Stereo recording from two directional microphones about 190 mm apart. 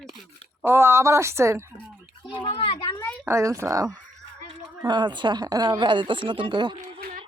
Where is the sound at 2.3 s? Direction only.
30° left (ahead or behind).